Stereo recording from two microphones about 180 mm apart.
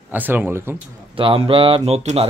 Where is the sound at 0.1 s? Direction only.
10° right (ahead or behind).